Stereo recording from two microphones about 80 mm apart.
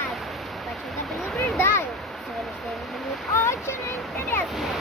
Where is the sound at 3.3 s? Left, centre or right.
Left.